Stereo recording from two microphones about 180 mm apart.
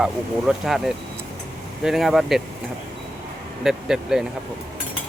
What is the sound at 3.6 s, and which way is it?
Speech, 5° right (ahead or behind).